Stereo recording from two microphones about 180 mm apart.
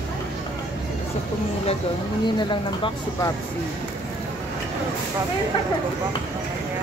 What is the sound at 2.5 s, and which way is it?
Speech, 25° left (ahead or behind).